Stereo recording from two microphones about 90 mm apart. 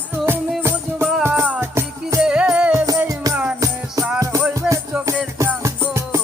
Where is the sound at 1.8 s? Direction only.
30° right (ahead or behind).